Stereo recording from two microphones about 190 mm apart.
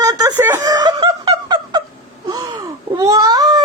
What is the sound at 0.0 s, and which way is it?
Snicker, 20° right (ahead or behind).